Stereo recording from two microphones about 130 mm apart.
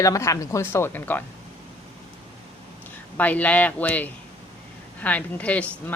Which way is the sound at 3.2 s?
10° left (ahead or behind).